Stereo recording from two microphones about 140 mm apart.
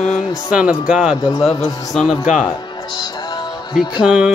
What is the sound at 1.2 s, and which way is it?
Music, 20° left (ahead or behind).